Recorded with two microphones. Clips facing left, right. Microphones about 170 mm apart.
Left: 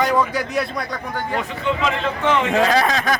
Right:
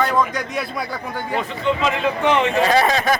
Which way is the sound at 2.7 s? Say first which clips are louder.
Right 2 dB; centre (ahead or behind).